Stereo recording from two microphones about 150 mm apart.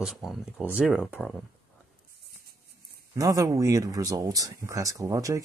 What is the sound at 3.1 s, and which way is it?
Speech, 25° right (ahead or behind).